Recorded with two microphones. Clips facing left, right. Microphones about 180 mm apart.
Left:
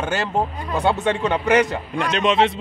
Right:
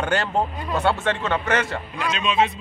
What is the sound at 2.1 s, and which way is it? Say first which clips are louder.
Speech: left 4 dB; 70° left (ahead or behind).